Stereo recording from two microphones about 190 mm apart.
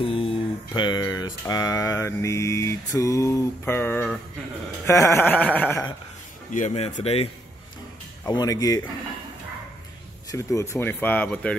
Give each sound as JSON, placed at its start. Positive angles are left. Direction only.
{"t": 0.0, "sound": "speech", "side_deg": 30}
{"t": 0.7, "sound": "mantra", "side_deg": 20}
{"t": 6.5, "sound": "speech", "side_deg": 35}
{"t": 8.3, "sound": "speech", "side_deg": 20}
{"t": 10.3, "sound": "mantra", "side_deg": 15}